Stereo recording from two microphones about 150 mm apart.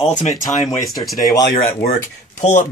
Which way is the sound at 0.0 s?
50° left (ahead or behind).